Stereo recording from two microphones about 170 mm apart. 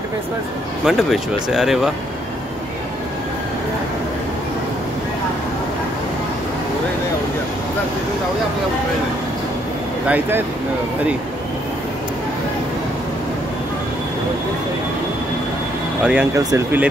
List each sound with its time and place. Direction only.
0.8 s speech: centre (ahead or behind)
10.0 s speech: 10° right (ahead or behind)
16.0 s speech: 5° right (ahead or behind)
16.3 s speech: 20° right (ahead or behind)